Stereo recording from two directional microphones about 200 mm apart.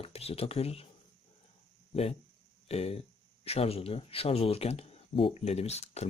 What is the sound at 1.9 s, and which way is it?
Speech, 30° left (ahead or behind).